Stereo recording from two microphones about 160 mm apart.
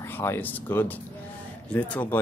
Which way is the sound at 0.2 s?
15° left (ahead or behind).